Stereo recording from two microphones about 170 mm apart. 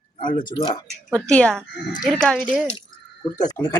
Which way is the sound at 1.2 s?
5° left (ahead or behind).